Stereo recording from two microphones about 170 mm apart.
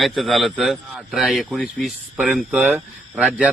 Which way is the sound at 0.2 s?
Centre (ahead or behind).